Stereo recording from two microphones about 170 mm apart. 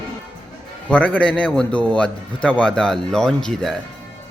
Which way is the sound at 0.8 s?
5° left (ahead or behind).